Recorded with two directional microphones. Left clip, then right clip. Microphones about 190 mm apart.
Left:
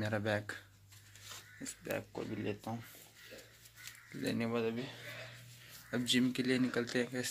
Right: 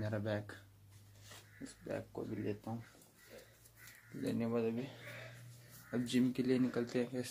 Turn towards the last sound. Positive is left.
turn(degrees=-5)  # may be behind; listen again after turning